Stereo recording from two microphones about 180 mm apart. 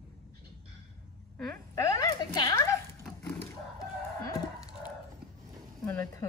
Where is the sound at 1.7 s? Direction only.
20° left (ahead or behind).